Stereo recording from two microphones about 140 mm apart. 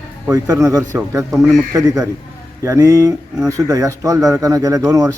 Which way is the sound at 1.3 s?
5° right (ahead or behind).